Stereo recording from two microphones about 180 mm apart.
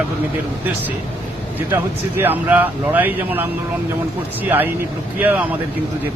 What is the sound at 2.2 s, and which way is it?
Speech, 10° right (ahead or behind).